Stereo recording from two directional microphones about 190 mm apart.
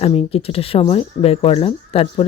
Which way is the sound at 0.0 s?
30° left (ahead or behind).